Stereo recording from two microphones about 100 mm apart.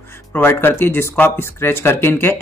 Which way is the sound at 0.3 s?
20° left (ahead or behind).